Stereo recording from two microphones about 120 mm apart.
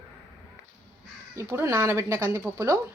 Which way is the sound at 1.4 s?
20° right (ahead or behind).